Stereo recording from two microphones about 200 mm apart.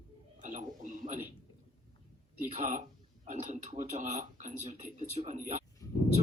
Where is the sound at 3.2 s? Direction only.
35° right (ahead or behind).